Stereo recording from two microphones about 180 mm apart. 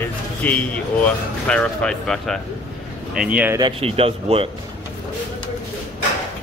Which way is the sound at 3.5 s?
30° right (ahead or behind).